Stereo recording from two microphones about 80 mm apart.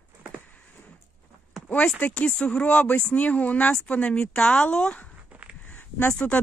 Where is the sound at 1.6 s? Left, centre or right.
Centre.